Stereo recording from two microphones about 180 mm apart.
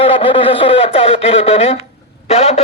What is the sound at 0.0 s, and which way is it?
A man's voice, 30° left (ahead or behind).